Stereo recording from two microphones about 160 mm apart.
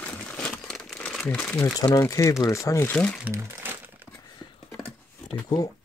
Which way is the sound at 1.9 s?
20° left (ahead or behind).